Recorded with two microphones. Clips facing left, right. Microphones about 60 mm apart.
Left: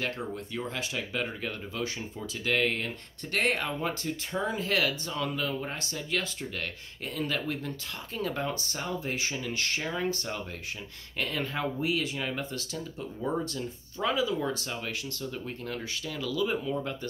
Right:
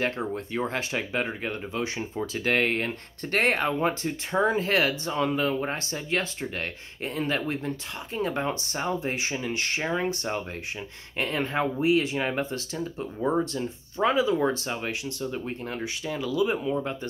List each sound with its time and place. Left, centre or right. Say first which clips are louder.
0.0 s speech: right 5 dB; right
2.1 s speech: right 4 dB; right